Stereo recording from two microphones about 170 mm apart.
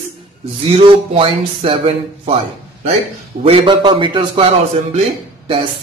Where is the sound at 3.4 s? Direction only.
30° right (ahead or behind).